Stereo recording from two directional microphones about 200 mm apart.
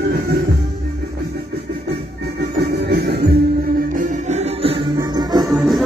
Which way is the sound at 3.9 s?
40° right (ahead or behind).